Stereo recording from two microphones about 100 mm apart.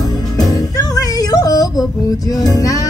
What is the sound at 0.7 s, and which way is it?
Music, 40° left (ahead or behind).